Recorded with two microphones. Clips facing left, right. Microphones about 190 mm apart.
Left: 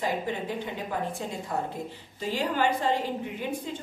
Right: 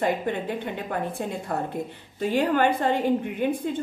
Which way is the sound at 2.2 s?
55° right (ahead or behind).